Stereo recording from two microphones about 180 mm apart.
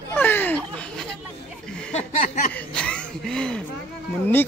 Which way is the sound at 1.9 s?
45° left (ahead or behind).